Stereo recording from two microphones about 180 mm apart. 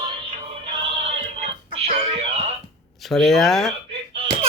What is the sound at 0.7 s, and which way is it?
Music, 30° right (ahead or behind).